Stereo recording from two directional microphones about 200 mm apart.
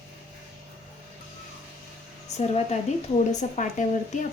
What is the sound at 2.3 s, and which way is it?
A woman's voice, 35° left (ahead or behind).